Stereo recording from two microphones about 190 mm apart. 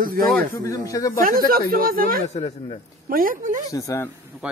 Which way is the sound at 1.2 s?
50° right (ahead or behind).